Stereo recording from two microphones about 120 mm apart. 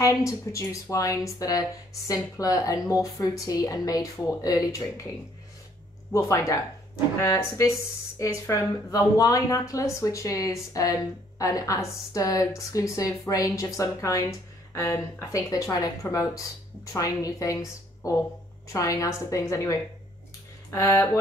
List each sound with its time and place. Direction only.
0.0 s speech: 25° left (ahead or behind)
6.1 s speech: 25° left (ahead or behind)